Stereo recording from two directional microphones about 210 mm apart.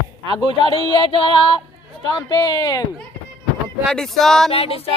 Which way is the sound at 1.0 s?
25° left (ahead or behind).